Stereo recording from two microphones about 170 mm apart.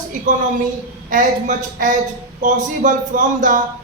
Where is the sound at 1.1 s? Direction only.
45° right (ahead or behind).